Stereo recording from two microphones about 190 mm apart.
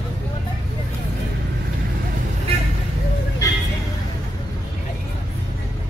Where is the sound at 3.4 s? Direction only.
20° left (ahead or behind).